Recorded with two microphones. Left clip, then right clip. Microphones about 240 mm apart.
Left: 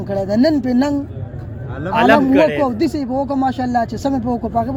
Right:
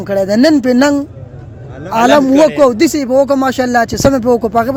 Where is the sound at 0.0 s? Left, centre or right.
Right.